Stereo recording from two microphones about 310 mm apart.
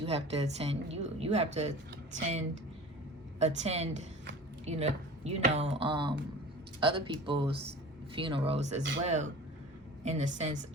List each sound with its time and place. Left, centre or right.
0.0 s a woman's voice: centre
3.3 s a woman's voice: right